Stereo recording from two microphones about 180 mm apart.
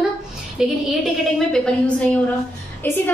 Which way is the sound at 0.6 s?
5° right (ahead or behind).